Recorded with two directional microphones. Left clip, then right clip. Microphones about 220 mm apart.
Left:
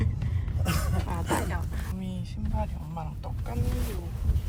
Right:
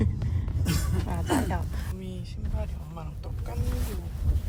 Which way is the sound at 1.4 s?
5° right (ahead or behind).